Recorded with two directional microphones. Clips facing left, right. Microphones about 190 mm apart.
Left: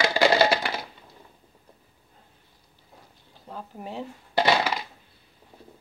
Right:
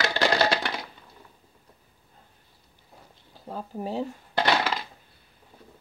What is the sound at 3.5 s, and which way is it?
Speech, 35° right (ahead or behind).